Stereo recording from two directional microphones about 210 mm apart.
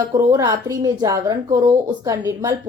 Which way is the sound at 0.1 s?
15° right (ahead or behind).